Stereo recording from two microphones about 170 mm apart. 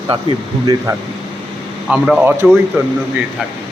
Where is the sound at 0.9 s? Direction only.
15° right (ahead or behind).